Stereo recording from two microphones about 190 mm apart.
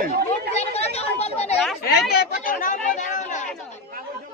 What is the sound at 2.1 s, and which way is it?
Speech, 55° left (ahead or behind).